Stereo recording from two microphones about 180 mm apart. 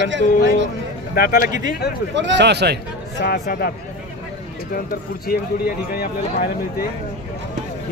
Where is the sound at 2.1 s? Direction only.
85° right; by 3.2 s 70° right (ahead or behind).